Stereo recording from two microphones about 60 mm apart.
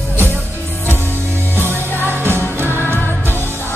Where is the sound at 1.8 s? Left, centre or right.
Right.